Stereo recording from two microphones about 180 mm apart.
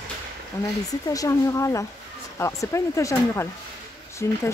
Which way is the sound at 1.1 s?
20° left (ahead or behind).